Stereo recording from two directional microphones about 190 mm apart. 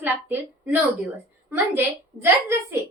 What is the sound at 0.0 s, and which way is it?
Speech, 10° right (ahead or behind).